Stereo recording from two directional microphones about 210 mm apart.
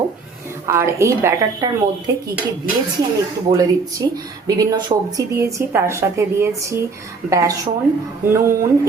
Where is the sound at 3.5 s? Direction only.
15° right (ahead or behind).